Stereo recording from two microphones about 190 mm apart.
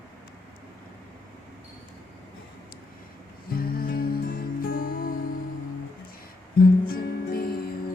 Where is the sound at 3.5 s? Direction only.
50° left (ahead or behind).